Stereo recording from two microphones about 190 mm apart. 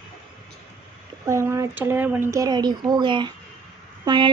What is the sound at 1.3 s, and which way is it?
A woman's voice, 15° right (ahead or behind).